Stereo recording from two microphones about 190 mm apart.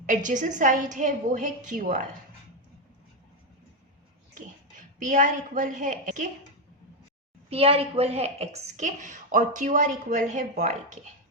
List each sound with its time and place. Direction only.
0.0 s a woman's voice: 40° right (ahead or behind)
4.4 s a woman's voice: 40° right (ahead or behind)
7.5 s a woman's voice: 30° right (ahead or behind)